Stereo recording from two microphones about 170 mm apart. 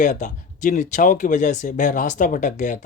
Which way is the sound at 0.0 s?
45° left (ahead or behind).